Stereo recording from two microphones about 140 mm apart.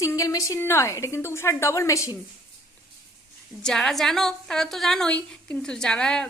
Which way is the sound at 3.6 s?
5° left (ahead or behind).